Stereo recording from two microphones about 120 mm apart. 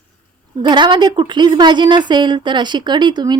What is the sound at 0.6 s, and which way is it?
Speech, 40° right (ahead or behind).